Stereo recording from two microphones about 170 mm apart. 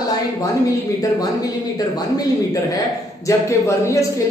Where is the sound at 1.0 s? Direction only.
20° left (ahead or behind).